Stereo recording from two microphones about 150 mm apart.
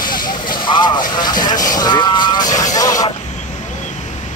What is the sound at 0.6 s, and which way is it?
Vehicle, 30° left (ahead or behind).